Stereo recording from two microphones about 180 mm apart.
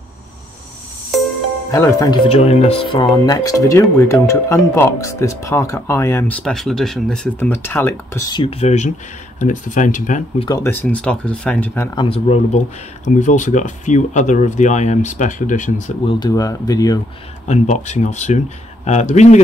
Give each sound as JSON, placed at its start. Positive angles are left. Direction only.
{"t": 1.7, "sound": "speech", "side_deg": 15}
{"t": 2.2, "sound": "speech", "side_deg": 35}
{"t": 3.1, "sound": "speech", "side_deg": 20}
{"t": 10.6, "sound": "speech", "side_deg": 10}
{"t": 11.9, "sound": "speech", "side_deg": 30}
{"t": 16.1, "sound": "speech", "side_deg": 20}
{"t": 17.5, "sound": "speech", "side_deg": 40}